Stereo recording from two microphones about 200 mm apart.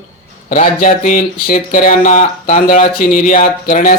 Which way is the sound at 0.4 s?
40° left (ahead or behind).